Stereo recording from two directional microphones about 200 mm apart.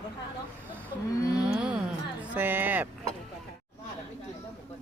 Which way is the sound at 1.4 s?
5° right (ahead or behind).